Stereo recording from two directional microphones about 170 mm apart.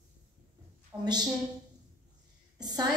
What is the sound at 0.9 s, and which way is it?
Speech, 10° right (ahead or behind).